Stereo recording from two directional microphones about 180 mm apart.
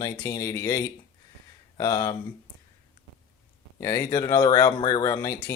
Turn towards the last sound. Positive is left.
turn(degrees=20)  # may be behind; listen again after turning